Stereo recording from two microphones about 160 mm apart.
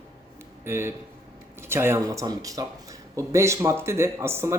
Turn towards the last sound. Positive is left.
turn(degrees=-15)  # may be behind; listen again after turning